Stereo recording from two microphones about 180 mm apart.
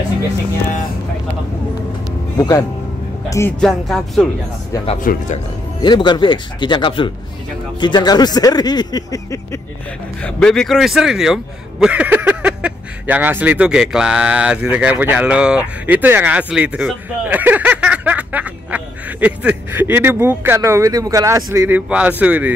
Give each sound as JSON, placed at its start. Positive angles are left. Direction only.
{"t": 2.3, "sound": "speech", "side_deg": 20}
{"t": 3.6, "sound": "music", "side_deg": 0}
{"t": 5.0, "sound": "speech", "side_deg": 50}
{"t": 5.8, "sound": "speech", "side_deg": 25}
{"t": 10.2, "sound": "speech", "side_deg": 5}